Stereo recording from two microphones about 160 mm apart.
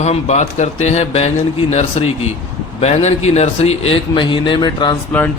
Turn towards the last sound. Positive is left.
turn(degrees=10)  # may be behind; listen again after turning